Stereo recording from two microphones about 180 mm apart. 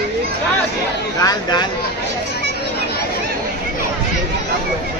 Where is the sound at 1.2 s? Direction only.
25° left (ahead or behind).